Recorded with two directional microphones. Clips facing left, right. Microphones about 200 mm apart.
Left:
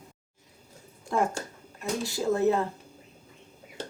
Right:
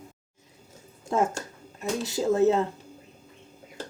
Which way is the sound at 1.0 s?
20° right (ahead or behind).